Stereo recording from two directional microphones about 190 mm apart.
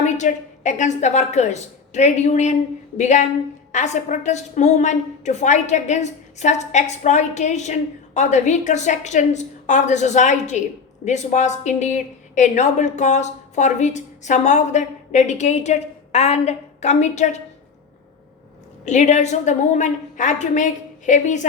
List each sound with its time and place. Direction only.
0.0 s a woman's voice: 40° left (ahead or behind)
18.9 s a woman's voice: 40° left (ahead or behind)